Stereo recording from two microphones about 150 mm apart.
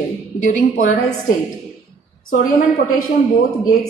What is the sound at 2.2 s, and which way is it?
Speech, 60° left (ahead or behind).